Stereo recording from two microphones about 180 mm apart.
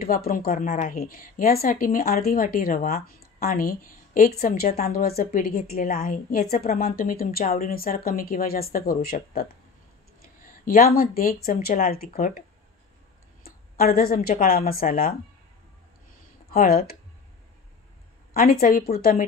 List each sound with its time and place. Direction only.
0.0 s a woman's voice: 55° left (ahead or behind)
13.4 s a sound: 55° left (ahead or behind)
14.4 s a woman's voice: 55° left (ahead or behind)
16.4 s speech: 55° left (ahead or behind)
18.3 s a woman's voice: 55° left (ahead or behind)